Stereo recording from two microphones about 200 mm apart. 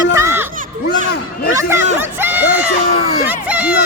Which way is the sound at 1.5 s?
15° right (ahead or behind).